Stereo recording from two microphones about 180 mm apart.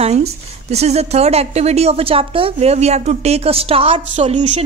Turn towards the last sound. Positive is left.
turn(degrees=-35)  # may be behind; listen again after turning